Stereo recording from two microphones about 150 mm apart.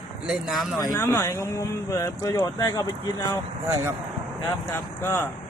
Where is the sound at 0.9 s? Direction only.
15° left (ahead or behind).